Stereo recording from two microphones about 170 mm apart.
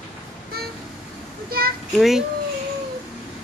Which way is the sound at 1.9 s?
Centre (ahead or behind).